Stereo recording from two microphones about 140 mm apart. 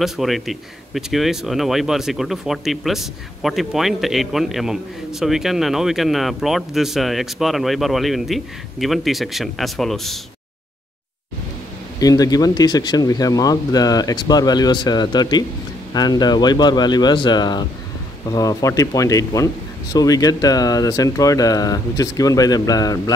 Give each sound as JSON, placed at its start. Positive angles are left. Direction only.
{"t": 0.0, "sound": "speech", "side_deg": 0}
{"t": 12.0, "sound": "speech", "side_deg": 25}